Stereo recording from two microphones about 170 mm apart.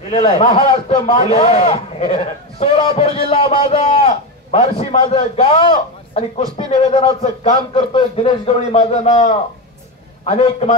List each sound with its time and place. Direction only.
0.1 s a man's voice: 35° left (ahead or behind)